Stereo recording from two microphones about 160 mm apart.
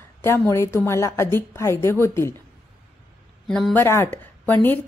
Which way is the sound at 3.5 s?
5° left (ahead or behind).